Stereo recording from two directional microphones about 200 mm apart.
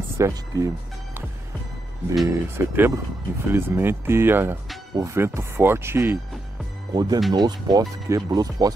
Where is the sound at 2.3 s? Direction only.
10° right (ahead or behind).